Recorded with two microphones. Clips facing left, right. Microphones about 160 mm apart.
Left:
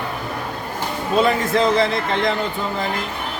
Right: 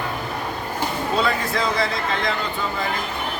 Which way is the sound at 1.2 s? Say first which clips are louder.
Left 7 dB; 20° left (ahead or behind).